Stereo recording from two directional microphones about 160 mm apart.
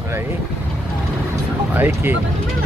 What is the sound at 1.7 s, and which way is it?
Speech, 10° right (ahead or behind).